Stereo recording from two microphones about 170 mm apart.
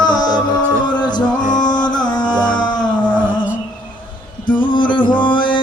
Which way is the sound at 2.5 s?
25° left (ahead or behind).